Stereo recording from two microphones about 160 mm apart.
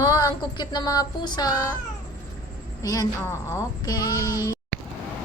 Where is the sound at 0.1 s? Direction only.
25° left (ahead or behind).